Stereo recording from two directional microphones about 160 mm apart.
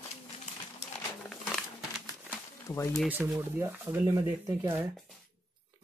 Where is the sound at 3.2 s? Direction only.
15° right (ahead or behind).